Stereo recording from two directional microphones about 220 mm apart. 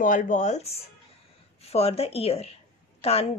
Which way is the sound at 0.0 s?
35° left (ahead or behind).